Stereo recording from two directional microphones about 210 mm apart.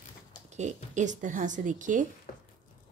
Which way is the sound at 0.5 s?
35° right (ahead or behind).